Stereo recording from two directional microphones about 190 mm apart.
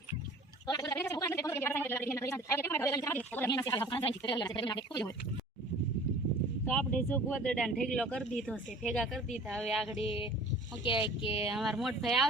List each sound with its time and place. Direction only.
0.7 s speech: 20° left (ahead or behind)
6.7 s speech: 10° left (ahead or behind)
10.0 s speech: 30° left (ahead or behind)
11.5 s speech: centre (ahead or behind)